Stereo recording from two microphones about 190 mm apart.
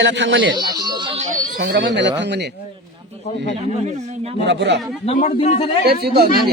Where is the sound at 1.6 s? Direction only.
65° right (ahead or behind).